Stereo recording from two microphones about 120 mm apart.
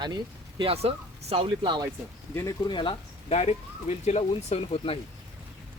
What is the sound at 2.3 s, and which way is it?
Speech, 25° left (ahead or behind).